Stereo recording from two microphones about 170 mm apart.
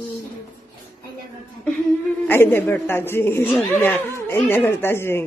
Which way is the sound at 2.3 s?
15° left (ahead or behind).